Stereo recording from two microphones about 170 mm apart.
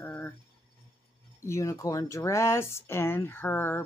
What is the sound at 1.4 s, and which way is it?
Speech, 15° left (ahead or behind).